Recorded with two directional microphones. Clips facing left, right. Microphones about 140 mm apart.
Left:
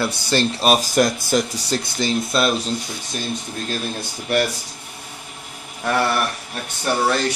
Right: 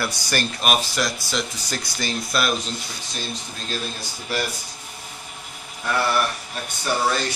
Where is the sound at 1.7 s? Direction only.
25° left (ahead or behind).